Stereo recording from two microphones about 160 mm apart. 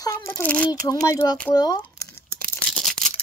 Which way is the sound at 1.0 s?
20° left (ahead or behind).